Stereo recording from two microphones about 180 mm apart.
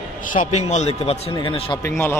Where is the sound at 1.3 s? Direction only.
25° left (ahead or behind).